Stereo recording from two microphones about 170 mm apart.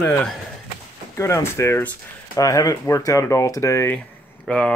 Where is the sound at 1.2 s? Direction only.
15° left (ahead or behind).